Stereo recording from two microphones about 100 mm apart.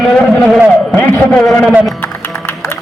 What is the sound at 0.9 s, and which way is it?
Speech, 20° left (ahead or behind).